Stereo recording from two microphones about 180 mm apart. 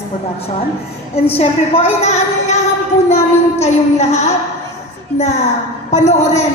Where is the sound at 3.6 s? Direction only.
35° left (ahead or behind).